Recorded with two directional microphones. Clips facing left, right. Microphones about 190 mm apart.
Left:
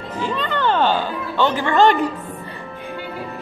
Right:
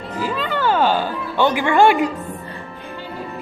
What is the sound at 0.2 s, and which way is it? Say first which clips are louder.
Speech: even; 5° right (ahead or behind).